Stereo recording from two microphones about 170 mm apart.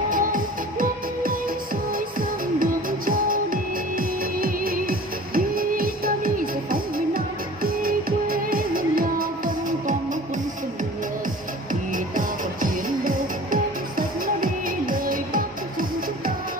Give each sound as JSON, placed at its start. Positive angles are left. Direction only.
{"t": 0.1, "sound": "music", "side_deg": -55}
{"t": 11.9, "sound": "music", "side_deg": -55}